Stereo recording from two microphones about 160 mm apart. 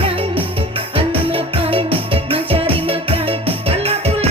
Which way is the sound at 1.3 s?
35° right (ahead or behind).